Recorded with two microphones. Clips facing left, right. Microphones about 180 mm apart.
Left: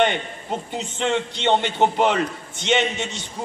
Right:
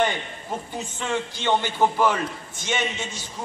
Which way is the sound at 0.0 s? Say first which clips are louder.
Left 3 dB; 20° left (ahead or behind).